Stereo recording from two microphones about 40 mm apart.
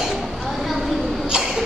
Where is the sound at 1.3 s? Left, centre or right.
Centre.